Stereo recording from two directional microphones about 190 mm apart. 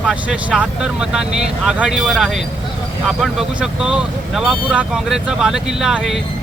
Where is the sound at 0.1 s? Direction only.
5° right (ahead or behind).